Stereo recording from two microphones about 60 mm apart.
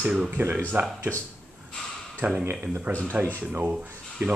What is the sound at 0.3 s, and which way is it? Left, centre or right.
Speech, right.